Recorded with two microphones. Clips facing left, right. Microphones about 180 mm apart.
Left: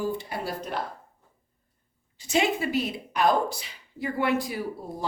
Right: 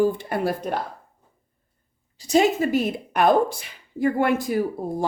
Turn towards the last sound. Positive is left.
turn(degrees=-50)  # may be behind; listen again after turning